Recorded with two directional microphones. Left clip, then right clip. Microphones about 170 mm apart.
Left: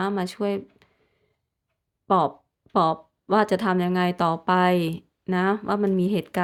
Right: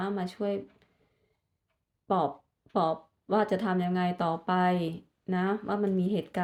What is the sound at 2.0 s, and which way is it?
Speech, 40° left (ahead or behind).